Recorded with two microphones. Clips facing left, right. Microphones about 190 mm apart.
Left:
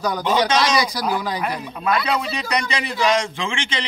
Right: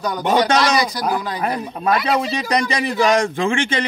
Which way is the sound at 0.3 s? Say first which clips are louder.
Right 3 dB; 50° right (ahead or behind).